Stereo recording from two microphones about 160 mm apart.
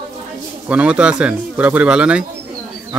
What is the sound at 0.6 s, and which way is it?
Speech, 10° right (ahead or behind).